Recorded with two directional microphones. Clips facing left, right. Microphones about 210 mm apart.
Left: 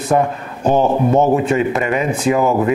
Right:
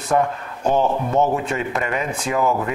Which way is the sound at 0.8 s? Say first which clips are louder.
Left 5 dB; 40° left (ahead or behind).